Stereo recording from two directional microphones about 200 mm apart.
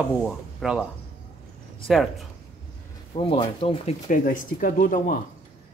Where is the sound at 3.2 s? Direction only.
25° left (ahead or behind).